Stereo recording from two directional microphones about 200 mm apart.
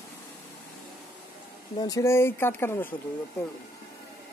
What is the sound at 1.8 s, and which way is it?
Speech, 15° left (ahead or behind).